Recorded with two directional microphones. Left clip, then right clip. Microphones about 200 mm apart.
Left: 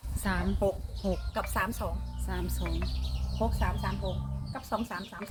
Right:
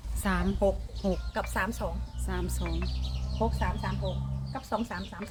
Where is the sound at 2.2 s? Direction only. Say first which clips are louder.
Right 2 dB; 30° right (ahead or behind).